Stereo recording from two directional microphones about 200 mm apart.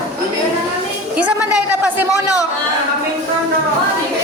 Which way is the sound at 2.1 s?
15° left (ahead or behind).